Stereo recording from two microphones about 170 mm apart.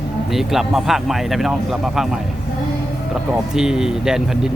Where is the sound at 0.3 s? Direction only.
Centre (ahead or behind).